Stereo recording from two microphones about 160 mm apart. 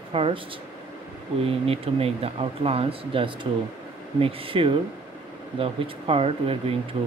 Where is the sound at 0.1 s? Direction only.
35° right (ahead or behind).